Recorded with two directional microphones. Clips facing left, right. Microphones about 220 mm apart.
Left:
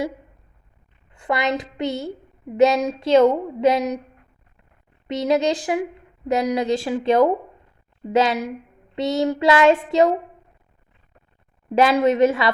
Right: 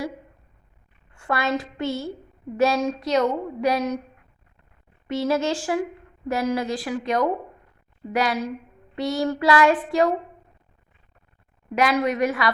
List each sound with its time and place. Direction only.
1.1 s a woman's voice: 20° left (ahead or behind)
5.0 s speech: 20° left (ahead or behind)
11.7 s speech: 25° left (ahead or behind)